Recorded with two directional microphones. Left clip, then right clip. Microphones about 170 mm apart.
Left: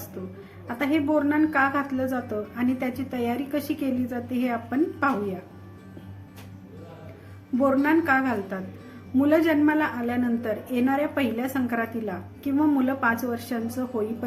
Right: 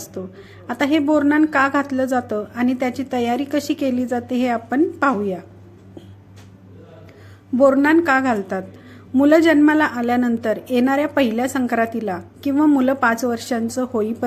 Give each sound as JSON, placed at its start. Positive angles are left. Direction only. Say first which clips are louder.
{"t": 0.7, "sound": "a woman's voice", "louder": "right 6 dB", "side_deg": -55}
{"t": 7.6, "sound": "a woman's voice", "louder": "right 8 dB", "side_deg": -50}